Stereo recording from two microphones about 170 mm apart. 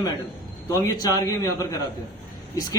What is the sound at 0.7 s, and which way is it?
Speech, 20° left (ahead or behind).